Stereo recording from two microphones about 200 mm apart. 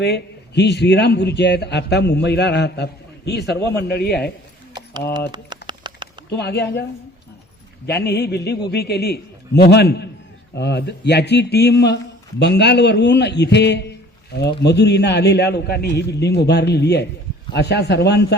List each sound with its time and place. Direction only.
0.0 s a man's voice: 55° left (ahead or behind)
5.3 s a sound: 20° right (ahead or behind)
6.3 s a man's voice: 55° left (ahead or behind)
7.9 s a man's voice: 55° left (ahead or behind)